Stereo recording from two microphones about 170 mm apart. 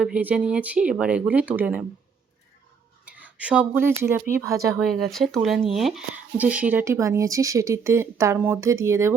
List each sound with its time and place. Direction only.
0.0 s speech: 10° right (ahead or behind)
3.1 s speech: 10° right (ahead or behind)
4.8 s speech: centre (ahead or behind); by 9.1 s 15° right (ahead or behind)